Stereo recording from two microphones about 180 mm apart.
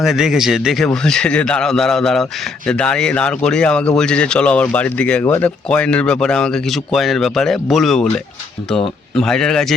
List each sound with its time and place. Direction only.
0.0 s speech: centre (ahead or behind); by 5.5 s 15° left (ahead or behind)
5.6 s speech: 5° left (ahead or behind)